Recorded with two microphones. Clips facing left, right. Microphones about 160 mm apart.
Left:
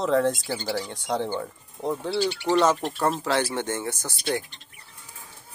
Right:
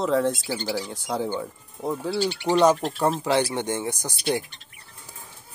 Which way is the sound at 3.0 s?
15° right (ahead or behind).